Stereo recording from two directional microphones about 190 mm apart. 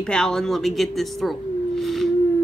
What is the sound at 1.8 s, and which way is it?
Howl, centre (ahead or behind).